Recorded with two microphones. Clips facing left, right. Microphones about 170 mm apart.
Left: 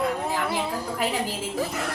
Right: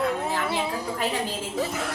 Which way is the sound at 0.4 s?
Centre (ahead or behind).